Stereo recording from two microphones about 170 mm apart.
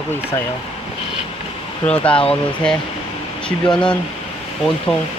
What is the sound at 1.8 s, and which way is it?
Speech, 5° left (ahead or behind).